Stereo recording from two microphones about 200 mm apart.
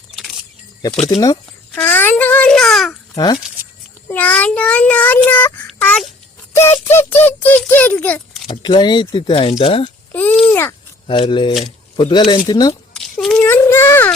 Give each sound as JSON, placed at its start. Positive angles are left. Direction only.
{"t": 1.7, "sound": "speech", "side_deg": 10}
{"t": 4.1, "sound": "speech", "side_deg": 10}
{"t": 5.8, "sound": "babbling", "side_deg": 5}
{"t": 6.5, "sound": "speech", "side_deg": 15}
{"t": 8.4, "sound": "speech", "side_deg": 25}
{"t": 10.1, "sound": "speech", "side_deg": 10}
{"t": 11.0, "sound": "speech", "side_deg": 25}
{"t": 12.9, "sound": "a child's voice", "side_deg": 0}